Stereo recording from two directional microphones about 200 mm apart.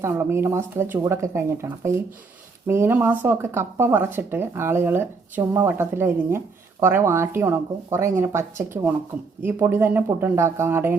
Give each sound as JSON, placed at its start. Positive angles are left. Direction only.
{"t": 0.0, "sound": "speech", "side_deg": -10}